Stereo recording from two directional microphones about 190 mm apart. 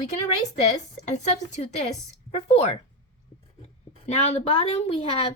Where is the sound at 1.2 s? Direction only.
35° left (ahead or behind).